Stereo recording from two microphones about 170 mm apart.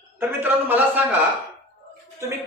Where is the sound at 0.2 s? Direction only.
10° right (ahead or behind).